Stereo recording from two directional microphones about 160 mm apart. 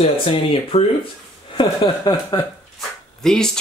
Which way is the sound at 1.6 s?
25° left (ahead or behind).